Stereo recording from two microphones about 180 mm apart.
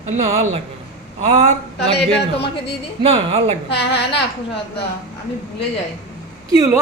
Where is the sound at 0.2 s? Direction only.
35° right (ahead or behind).